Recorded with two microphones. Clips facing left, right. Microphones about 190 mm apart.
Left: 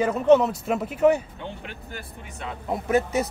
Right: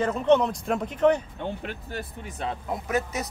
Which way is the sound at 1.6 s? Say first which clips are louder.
Right 4 dB; 35° right (ahead or behind).